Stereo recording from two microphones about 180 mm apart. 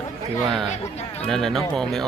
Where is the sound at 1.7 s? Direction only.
Centre (ahead or behind).